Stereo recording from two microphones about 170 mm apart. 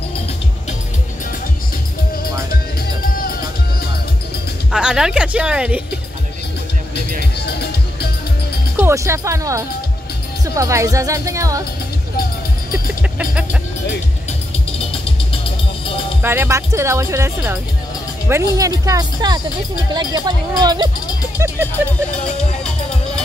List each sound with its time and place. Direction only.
4.7 s speech: 5° right (ahead or behind)
8.7 s speech: 15° right (ahead or behind)
13.2 s speech: 5° right (ahead or behind)
14.8 s music: 35° left (ahead or behind)
16.2 s speech: 15° right (ahead or behind)
21.8 s speech: 10° right (ahead or behind)